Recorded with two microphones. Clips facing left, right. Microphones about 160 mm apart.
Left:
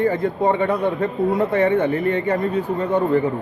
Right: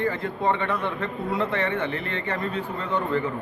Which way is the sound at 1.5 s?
15° left (ahead or behind).